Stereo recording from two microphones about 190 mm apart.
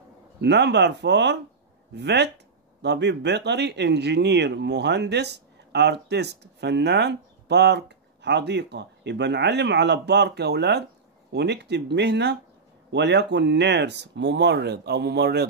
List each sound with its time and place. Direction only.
0.4 s a man's voice: 65° right (ahead or behind)